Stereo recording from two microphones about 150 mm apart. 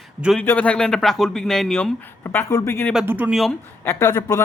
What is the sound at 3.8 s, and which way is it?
Speech, 15° left (ahead or behind).